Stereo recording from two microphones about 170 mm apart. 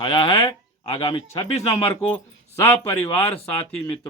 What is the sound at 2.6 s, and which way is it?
Speech, 15° left (ahead or behind).